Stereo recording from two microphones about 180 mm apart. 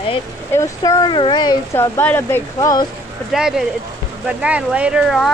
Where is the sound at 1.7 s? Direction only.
10° left (ahead or behind).